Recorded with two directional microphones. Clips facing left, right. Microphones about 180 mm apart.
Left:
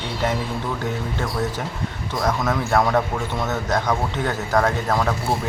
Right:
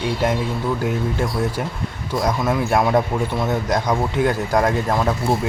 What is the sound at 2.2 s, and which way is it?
Speech, 10° right (ahead or behind).